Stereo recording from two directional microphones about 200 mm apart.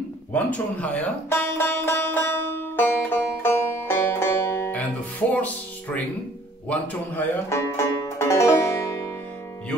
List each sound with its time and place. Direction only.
0.3 s music: 5° left (ahead or behind)
6.7 s banjo: 10° left (ahead or behind)